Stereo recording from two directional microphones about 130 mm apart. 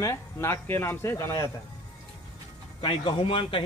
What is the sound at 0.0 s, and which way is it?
Speech, 20° left (ahead or behind).